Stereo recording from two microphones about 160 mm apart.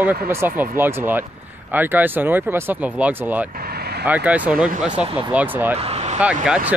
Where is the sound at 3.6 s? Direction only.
75° right (ahead or behind).